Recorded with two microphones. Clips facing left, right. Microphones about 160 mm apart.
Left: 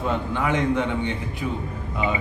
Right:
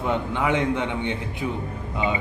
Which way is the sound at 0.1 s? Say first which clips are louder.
Right 2 dB; 20° right (ahead or behind).